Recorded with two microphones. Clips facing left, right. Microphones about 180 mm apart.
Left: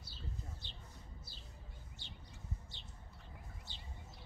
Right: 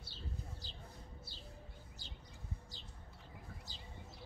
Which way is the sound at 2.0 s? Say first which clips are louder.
Left 1 dB; 35° right (ahead or behind).